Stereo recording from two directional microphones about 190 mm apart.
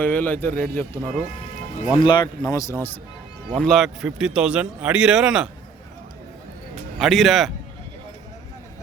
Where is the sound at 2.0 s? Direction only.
25° left (ahead or behind).